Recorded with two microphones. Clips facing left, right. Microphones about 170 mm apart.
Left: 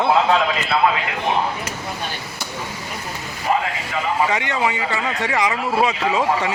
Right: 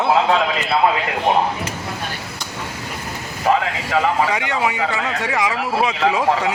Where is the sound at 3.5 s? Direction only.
80° right.